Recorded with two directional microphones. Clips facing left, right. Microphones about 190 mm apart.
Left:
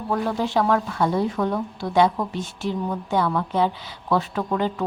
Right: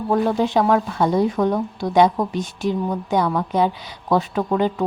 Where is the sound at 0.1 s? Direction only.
20° right (ahead or behind).